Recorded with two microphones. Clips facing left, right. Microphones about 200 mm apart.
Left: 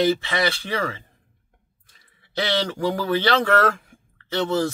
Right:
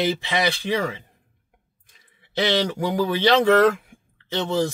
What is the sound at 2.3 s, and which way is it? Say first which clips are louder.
Speech: right 2 dB; 15° right (ahead or behind).